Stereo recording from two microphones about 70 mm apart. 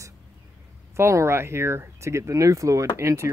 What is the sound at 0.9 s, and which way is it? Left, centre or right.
Speech, right.